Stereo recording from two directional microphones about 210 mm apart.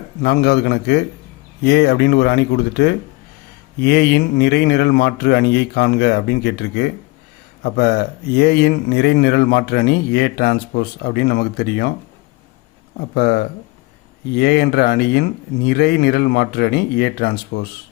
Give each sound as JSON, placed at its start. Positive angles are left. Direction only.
{"t": 0.2, "sound": "speech", "side_deg": 45}
{"t": 13.1, "sound": "speech", "side_deg": 50}